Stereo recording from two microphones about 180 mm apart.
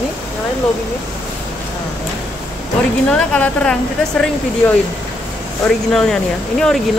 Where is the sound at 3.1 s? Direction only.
5° left (ahead or behind).